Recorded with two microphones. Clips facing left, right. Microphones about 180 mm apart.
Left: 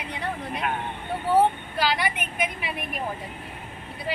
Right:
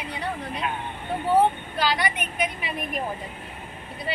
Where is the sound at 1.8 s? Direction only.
10° left (ahead or behind).